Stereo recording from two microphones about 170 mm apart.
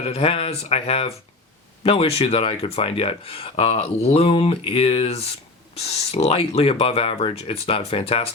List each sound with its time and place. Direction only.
0.1 s speech: 35° left (ahead or behind)